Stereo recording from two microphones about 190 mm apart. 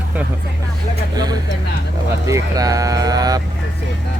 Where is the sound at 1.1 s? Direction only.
20° right (ahead or behind).